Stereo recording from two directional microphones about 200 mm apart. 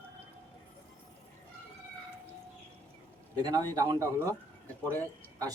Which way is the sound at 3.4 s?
20° right (ahead or behind).